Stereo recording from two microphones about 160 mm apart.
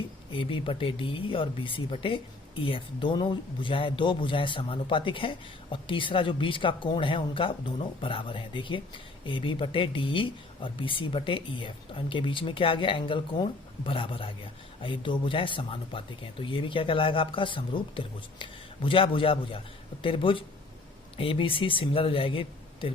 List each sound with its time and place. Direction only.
0.3 s speech: 35° left (ahead or behind)